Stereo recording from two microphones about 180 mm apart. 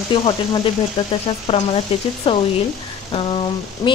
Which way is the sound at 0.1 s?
30° left (ahead or behind).